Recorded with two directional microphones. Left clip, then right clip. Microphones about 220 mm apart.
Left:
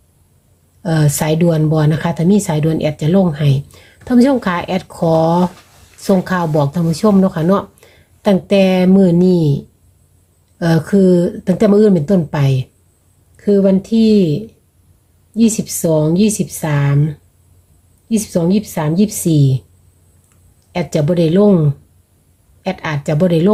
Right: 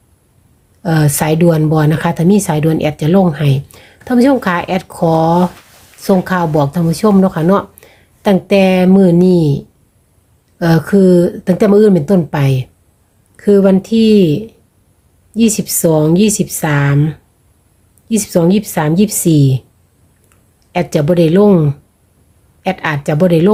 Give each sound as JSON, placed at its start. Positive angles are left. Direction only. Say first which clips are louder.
{"t": 0.8, "sound": "speech", "louder": "right 3 dB", "side_deg": -10}
{"t": 20.7, "sound": "speech", "louder": "right 4 dB", "side_deg": -10}